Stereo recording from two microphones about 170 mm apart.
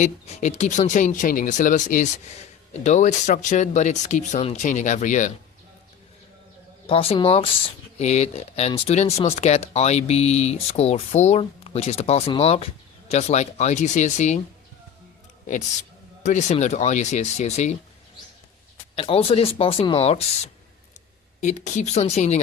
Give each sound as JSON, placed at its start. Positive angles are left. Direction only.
{"t": 0.0, "sound": "speech", "side_deg": 40}
{"t": 6.8, "sound": "speech", "side_deg": 35}
{"t": 16.2, "sound": "speech", "side_deg": 45}
{"t": 18.9, "sound": "speech", "side_deg": 35}